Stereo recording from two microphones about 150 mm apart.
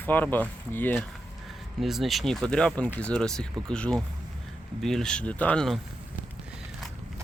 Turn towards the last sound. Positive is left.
turn(degrees=5)  # may be behind; listen again after turning